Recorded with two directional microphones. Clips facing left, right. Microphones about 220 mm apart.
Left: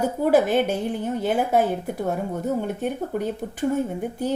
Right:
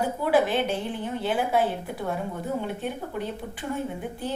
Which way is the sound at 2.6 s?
45° left (ahead or behind).